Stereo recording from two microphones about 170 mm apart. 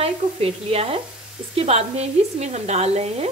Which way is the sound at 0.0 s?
35° right (ahead or behind).